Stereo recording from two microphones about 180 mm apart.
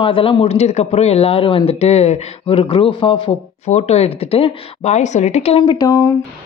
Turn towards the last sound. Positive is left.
turn(degrees=20)  # may be behind; listen again after turning